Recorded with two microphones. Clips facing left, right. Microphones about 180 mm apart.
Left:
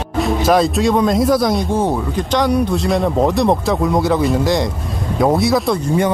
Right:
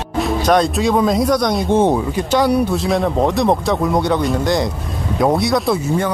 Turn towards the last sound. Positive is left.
turn(degrees=0)  # may be behind; listen again after turning